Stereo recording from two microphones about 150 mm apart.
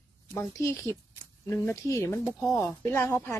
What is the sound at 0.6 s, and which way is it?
A woman's voice, 20° left (ahead or behind).